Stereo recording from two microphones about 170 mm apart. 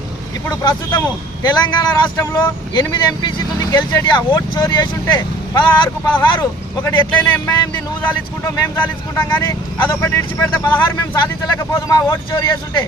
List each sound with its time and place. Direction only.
0.6 s speech: 25° left (ahead or behind)
6.8 s speech: 10° left (ahead or behind)